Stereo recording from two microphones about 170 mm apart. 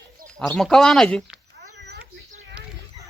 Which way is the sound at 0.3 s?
5° left (ahead or behind).